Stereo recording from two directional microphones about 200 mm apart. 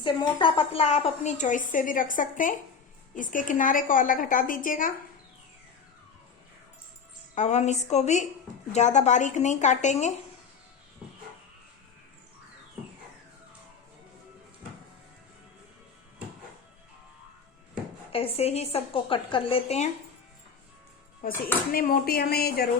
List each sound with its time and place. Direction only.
0.0 s a woman's voice: 25° left (ahead or behind); by 4.9 s 45° left (ahead or behind)
7.3 s a woman's voice: 35° left (ahead or behind)
18.1 s a woman's voice: 30° left (ahead or behind)
21.2 s a woman's voice: 45° left (ahead or behind)